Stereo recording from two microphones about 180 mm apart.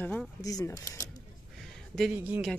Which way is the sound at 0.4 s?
20° left (ahead or behind).